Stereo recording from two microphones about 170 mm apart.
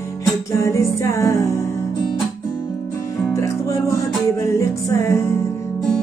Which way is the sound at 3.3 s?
15° left (ahead or behind).